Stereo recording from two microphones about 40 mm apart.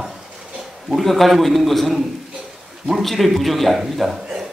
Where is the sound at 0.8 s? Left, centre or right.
Centre.